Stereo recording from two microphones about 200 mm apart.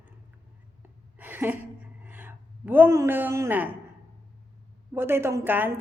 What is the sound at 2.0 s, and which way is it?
A woman's voice, 10° right (ahead or behind).